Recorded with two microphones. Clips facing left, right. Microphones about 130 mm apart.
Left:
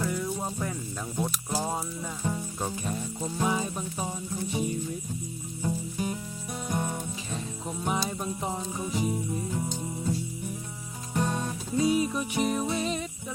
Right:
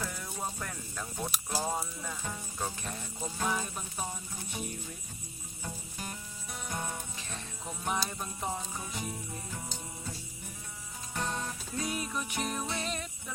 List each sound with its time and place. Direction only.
0.0 s music: 5° left (ahead or behind)
5.6 s music: 15° left (ahead or behind)
12.6 s music: 15° left (ahead or behind)